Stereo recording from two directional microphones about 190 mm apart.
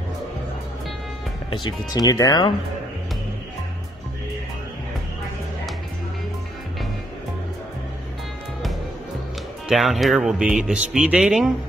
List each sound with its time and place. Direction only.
1.5 s speech: 20° left (ahead or behind)
9.7 s speech: centre (ahead or behind)